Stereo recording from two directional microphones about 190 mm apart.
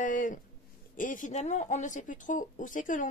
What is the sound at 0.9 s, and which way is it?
Speech, 45° left (ahead or behind).